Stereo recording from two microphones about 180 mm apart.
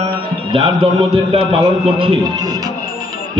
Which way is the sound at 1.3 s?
30° right (ahead or behind).